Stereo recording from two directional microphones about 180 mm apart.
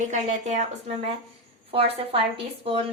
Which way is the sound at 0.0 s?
40° right (ahead or behind).